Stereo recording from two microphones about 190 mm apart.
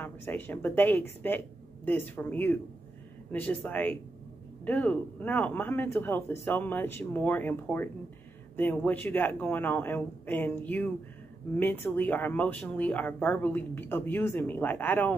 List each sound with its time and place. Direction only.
0.0 s speech: 10° left (ahead or behind)